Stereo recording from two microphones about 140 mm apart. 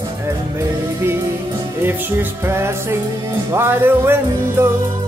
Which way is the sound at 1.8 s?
15° right (ahead or behind).